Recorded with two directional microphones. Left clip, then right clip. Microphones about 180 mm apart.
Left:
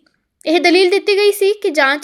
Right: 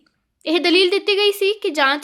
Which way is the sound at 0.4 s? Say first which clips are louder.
Left 4 dB; 20° left (ahead or behind).